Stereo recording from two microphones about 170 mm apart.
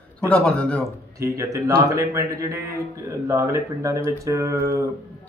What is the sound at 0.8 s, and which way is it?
Speech, 20° right (ahead or behind).